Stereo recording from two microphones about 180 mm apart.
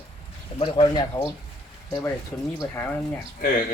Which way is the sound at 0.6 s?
25° left (ahead or behind).